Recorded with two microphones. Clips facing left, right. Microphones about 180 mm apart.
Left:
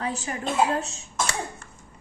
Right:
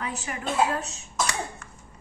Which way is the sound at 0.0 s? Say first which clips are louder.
Left 3 dB; 30° left (ahead or behind).